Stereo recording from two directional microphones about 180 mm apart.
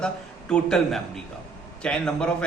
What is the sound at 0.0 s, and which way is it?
A man's voice, 5° left (ahead or behind).